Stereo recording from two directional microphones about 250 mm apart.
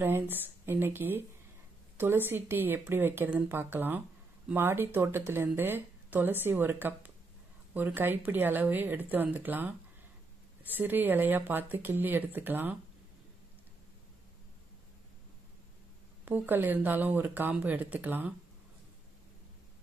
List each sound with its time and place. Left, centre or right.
0.0 s speech: centre
16.3 s speech: centre